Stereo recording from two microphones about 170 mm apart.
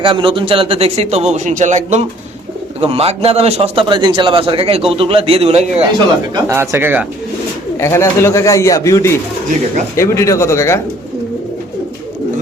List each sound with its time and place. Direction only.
0.0 s a man's voice: 30° right (ahead or behind)
6.3 s speech: 15° right (ahead or behind)
7.8 s speech: 15° left (ahead or behind)